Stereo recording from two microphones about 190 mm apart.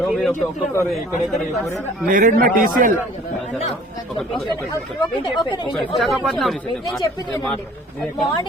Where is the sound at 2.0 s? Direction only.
40° right (ahead or behind).